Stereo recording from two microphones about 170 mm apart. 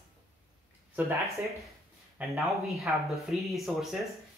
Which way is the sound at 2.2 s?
Centre (ahead or behind).